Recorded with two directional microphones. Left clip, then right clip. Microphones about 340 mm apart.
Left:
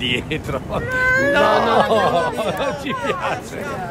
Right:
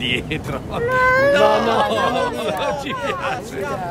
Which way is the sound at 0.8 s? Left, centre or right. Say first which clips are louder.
Right 3 dB; centre.